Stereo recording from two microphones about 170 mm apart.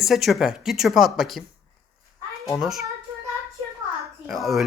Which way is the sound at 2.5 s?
Centre (ahead or behind).